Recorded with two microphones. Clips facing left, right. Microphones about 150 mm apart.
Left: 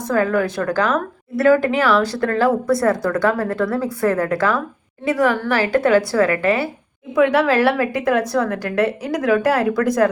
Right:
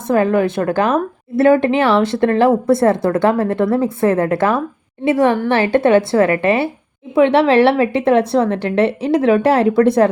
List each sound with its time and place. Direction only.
0.1 s a woman's voice: 20° right (ahead or behind)